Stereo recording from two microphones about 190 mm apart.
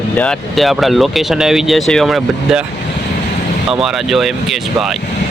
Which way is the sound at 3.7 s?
Centre (ahead or behind).